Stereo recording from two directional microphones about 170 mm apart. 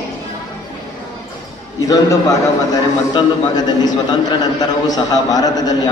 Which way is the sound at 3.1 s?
25° left (ahead or behind).